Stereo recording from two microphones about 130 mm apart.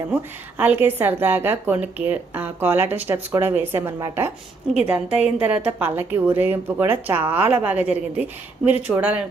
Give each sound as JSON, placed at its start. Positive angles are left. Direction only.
{"t": 0.1, "sound": "a woman's voice", "side_deg": -15}